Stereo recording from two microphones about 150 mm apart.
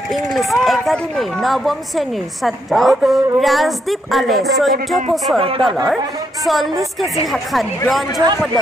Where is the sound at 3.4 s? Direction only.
Centre (ahead or behind).